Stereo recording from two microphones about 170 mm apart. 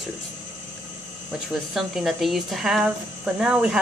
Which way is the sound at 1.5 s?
Centre (ahead or behind).